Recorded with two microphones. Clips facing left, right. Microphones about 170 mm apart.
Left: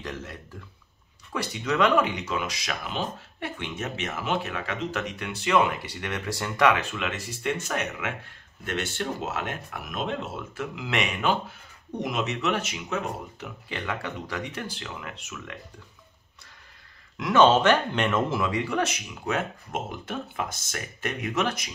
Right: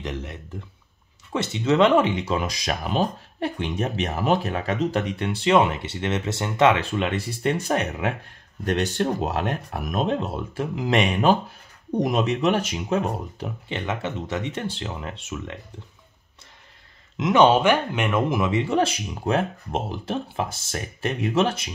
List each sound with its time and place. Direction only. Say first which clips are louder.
0.0 s speech: right 4 dB; 20° right (ahead or behind)
17.2 s speech: right 2 dB; 15° right (ahead or behind)